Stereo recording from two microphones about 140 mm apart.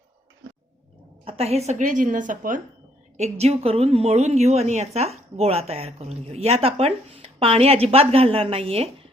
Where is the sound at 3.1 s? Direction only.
50° right (ahead or behind).